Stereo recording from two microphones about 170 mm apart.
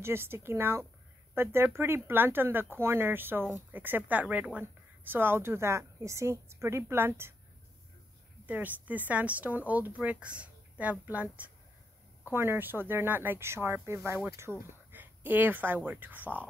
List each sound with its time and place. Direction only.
0.0 s speech: 15° right (ahead or behind)
8.5 s speech: 10° right (ahead or behind)